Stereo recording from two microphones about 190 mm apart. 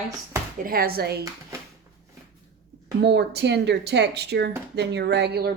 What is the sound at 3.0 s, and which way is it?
Speech, 60° right (ahead or behind).